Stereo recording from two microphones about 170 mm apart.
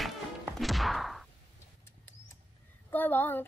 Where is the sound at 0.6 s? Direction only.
Centre (ahead or behind).